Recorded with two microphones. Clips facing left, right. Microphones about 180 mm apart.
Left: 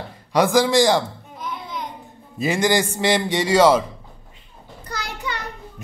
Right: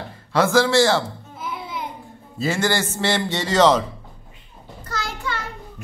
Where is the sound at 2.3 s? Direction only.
15° left (ahead or behind).